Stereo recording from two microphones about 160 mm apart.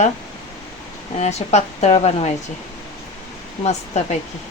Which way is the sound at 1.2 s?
45° left (ahead or behind).